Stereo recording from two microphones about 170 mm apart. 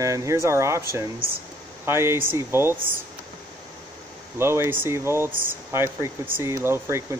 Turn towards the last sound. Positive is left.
turn(degrees=-15)  # may be behind; listen again after turning